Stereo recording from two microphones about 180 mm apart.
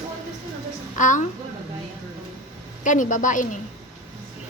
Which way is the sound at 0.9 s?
45° left (ahead or behind).